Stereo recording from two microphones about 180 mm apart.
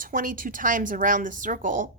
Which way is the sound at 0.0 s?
50° right (ahead or behind).